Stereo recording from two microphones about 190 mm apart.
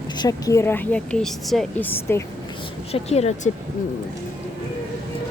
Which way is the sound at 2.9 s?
35° left (ahead or behind).